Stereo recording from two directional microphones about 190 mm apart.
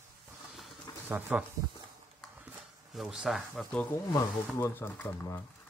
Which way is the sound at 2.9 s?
Centre (ahead or behind).